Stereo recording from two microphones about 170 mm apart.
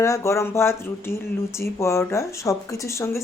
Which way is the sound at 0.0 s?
15° left (ahead or behind).